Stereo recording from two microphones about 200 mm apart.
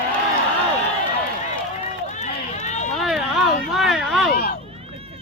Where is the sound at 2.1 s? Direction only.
35° left (ahead or behind).